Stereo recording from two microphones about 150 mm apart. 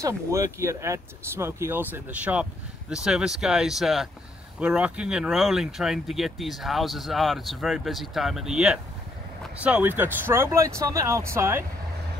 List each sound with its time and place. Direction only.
0.0 s speech: 20° right (ahead or behind)